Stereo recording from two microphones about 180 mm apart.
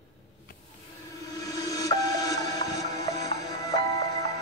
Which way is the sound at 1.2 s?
20° left (ahead or behind).